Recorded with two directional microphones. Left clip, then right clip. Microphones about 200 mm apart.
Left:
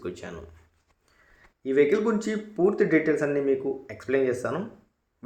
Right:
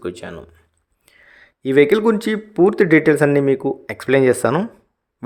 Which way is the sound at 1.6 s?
55° right (ahead or behind).